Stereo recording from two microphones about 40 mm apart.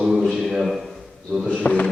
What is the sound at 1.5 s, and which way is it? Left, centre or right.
Speech, left.